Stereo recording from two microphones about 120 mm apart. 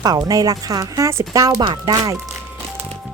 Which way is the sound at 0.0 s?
30° right (ahead or behind).